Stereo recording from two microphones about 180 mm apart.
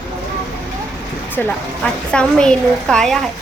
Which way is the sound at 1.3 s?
10° left (ahead or behind).